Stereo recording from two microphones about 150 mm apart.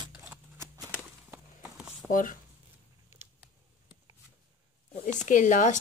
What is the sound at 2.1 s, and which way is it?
Speech, 60° left (ahead or behind).